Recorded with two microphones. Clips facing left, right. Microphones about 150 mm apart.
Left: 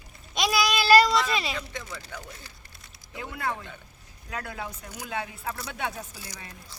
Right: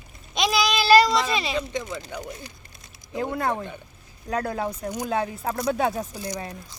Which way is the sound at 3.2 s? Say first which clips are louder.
Right 5 dB; 50° right (ahead or behind).